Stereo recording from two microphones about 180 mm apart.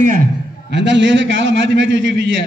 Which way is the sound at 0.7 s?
85° right.